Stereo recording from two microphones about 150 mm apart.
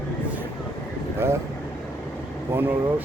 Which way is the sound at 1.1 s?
15° right (ahead or behind).